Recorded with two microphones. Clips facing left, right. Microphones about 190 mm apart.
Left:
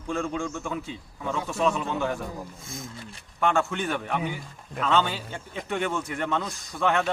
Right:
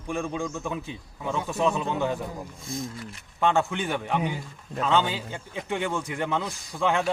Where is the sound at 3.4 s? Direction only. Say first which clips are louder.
Right 1 dB; 15° right (ahead or behind).